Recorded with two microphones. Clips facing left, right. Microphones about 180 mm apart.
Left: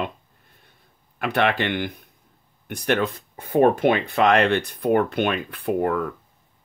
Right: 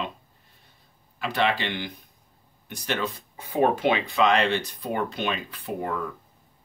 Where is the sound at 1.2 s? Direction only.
60° left (ahead or behind).